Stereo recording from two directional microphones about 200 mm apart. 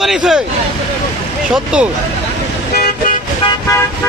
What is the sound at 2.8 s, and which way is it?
Car, 50° left (ahead or behind).